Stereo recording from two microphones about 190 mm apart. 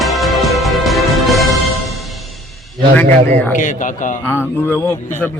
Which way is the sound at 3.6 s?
45° left (ahead or behind).